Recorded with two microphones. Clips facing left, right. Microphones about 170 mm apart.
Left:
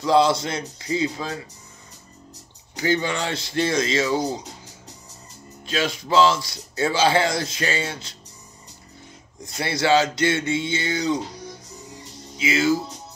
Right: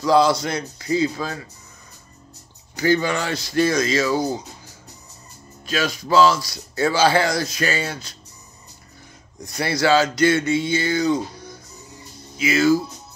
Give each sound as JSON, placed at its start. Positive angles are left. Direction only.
{"t": 0.0, "sound": "speech", "side_deg": 25}
{"t": 2.7, "sound": "speech", "side_deg": 20}
{"t": 5.7, "sound": "speech", "side_deg": 25}
{"t": 9.4, "sound": "speech", "side_deg": 25}
{"t": 12.4, "sound": "speech", "side_deg": 25}